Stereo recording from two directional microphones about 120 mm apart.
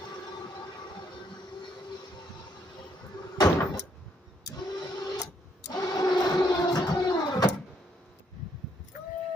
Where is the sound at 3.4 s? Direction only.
35° left (ahead or behind).